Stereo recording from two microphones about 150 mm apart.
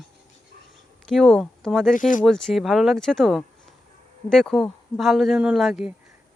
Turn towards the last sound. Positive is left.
turn(degrees=-5)  # may be behind; listen again after turning